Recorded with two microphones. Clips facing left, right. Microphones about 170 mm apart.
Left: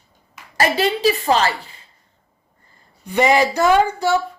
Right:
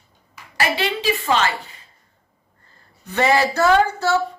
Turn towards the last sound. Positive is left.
turn(degrees=15)  # may be behind; listen again after turning